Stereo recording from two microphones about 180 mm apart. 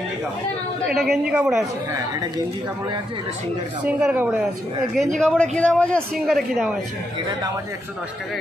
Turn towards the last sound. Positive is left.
turn(degrees=0)  # may be behind; listen again after turning